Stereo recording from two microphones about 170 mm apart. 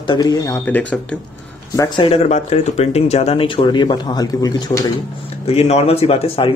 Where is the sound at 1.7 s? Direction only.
25° left (ahead or behind).